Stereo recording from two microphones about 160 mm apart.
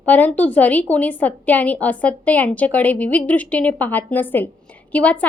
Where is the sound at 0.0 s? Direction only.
10° left (ahead or behind).